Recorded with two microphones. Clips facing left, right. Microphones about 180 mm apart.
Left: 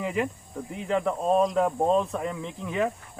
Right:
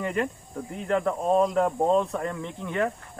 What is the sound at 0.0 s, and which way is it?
Speech, 5° left (ahead or behind).